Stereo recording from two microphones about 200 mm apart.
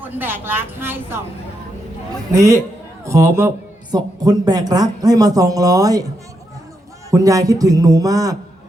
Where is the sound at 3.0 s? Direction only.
15° right (ahead or behind).